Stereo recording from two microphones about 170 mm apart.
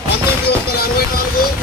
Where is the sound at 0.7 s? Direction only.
65° left (ahead or behind).